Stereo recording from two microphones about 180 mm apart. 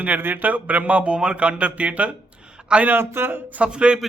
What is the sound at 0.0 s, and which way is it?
A man's voice, 10° right (ahead or behind).